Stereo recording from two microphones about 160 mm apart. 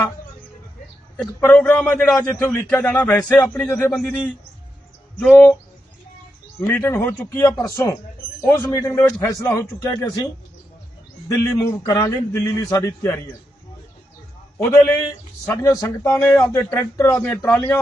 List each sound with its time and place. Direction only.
1.4 s speech: 15° left (ahead or behind)
5.2 s speech: 5° left (ahead or behind)
6.6 s a man's voice: 15° left (ahead or behind)
11.3 s a man's voice: 20° left (ahead or behind)
14.6 s speech: 15° left (ahead or behind)